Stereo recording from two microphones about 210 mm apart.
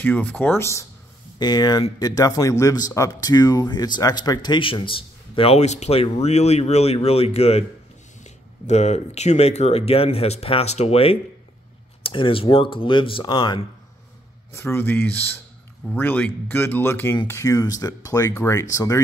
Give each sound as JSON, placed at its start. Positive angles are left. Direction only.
{"t": 0.0, "sound": "speech", "side_deg": 10}
{"t": 14.5, "sound": "speech", "side_deg": 10}